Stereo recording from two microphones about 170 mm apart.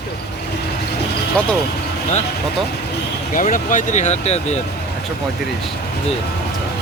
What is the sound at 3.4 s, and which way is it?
Speech, 50° left (ahead or behind).